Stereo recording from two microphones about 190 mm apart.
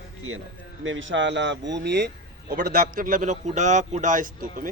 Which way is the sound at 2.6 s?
50° right (ahead or behind).